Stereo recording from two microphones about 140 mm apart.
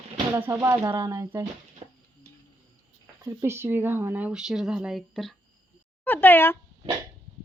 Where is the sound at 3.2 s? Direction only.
20° right (ahead or behind); by 5.3 s centre (ahead or behind).